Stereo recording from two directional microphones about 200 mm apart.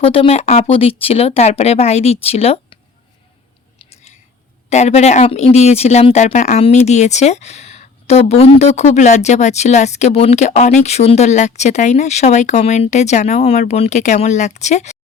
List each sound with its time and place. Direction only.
0.0 s speech: 30° left (ahead or behind)
4.7 s speech: 35° left (ahead or behind)